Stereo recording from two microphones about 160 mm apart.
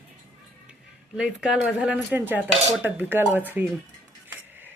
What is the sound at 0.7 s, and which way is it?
Speech, 5° right (ahead or behind).